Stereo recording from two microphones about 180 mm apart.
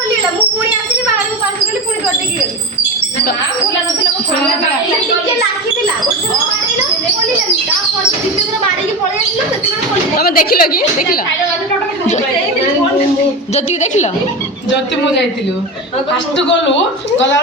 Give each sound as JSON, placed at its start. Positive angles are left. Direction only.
{"t": 10.2, "sound": "a woman's voice", "side_deg": 55}
{"t": 13.5, "sound": "a woman's voice", "side_deg": 40}
{"t": 16.5, "sound": "a woman's voice", "side_deg": 90}